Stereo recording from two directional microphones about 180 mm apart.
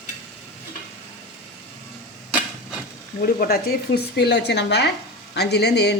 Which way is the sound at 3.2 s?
60° left (ahead or behind).